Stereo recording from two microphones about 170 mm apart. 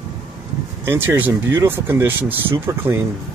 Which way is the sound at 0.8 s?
15° right (ahead or behind).